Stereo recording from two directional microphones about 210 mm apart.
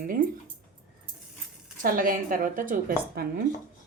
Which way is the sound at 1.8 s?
45° right (ahead or behind).